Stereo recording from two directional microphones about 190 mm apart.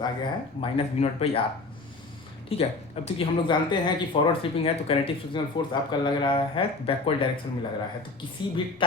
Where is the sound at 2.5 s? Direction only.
30° left (ahead or behind).